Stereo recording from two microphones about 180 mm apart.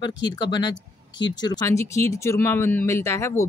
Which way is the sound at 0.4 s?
25° left (ahead or behind).